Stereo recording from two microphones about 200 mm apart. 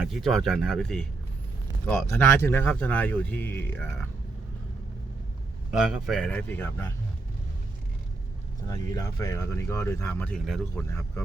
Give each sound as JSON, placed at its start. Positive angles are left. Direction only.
{"t": 0.0, "sound": "speech", "side_deg": 0}
{"t": 2.0, "sound": "speech", "side_deg": 10}
{"t": 5.7, "sound": "speech", "side_deg": 0}
{"t": 8.6, "sound": "speech", "side_deg": 15}